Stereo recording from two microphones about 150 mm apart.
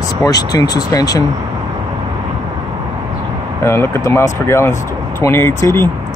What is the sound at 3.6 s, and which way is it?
Speech, 15° left (ahead or behind).